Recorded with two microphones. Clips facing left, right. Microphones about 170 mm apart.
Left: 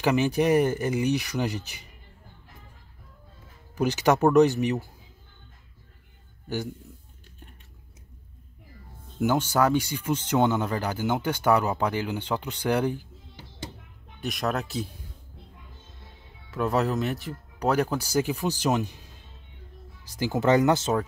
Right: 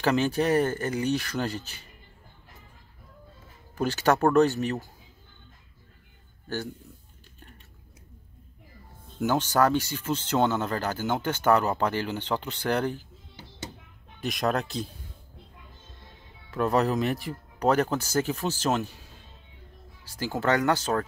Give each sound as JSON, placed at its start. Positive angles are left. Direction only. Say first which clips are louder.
{"t": 0.0, "sound": "speech", "louder": "left 1 dB", "side_deg": 15}
{"t": 3.7, "sound": "speech", "louder": "left 1 dB", "side_deg": 15}
{"t": 9.2, "sound": "speech", "louder": "even", "side_deg": 10}
{"t": 14.2, "sound": "speech", "louder": "right 1 dB", "side_deg": 0}
{"t": 16.4, "sound": "speech", "louder": "right 1 dB", "side_deg": 5}
{"t": 20.1, "sound": "speech", "louder": "left 4 dB", "side_deg": 20}